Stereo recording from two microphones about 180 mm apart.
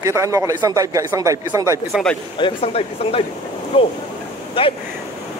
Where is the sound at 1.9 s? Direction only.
Centre (ahead or behind).